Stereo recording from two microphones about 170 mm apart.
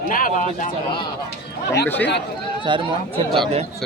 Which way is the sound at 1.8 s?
10° left (ahead or behind).